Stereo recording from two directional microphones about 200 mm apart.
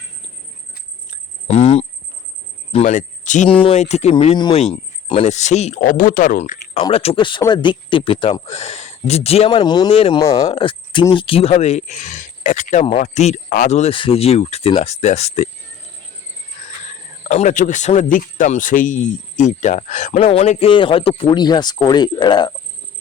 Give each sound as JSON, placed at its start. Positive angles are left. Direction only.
{"t": 1.5, "sound": "cricket", "side_deg": 30}
{"t": 2.7, "sound": "speech", "side_deg": 40}
{"t": 16.6, "sound": "speech", "side_deg": 35}